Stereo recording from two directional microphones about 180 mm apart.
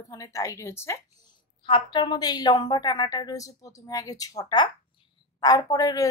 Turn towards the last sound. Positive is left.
turn(degrees=20)  # may be behind; listen again after turning